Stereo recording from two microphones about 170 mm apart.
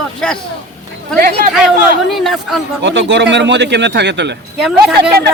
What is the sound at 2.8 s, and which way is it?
A man's voice, 90° right.